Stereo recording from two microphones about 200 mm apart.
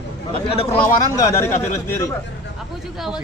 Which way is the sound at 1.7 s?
15° left (ahead or behind).